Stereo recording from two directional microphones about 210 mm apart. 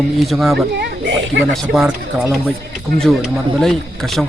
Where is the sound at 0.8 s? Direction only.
60° right (ahead or behind).